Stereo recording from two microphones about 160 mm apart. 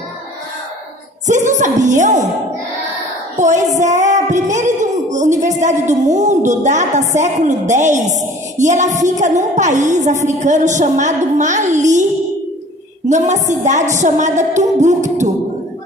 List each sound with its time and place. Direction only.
1.2 s music: 50° right (ahead or behind)
3.3 s music: 50° right (ahead or behind)
13.1 s music: 50° right (ahead or behind)